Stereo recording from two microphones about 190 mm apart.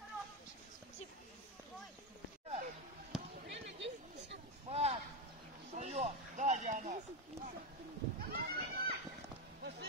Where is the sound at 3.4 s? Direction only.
70° right (ahead or behind).